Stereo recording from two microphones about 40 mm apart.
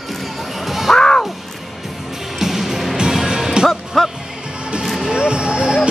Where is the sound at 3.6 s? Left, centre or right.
Centre.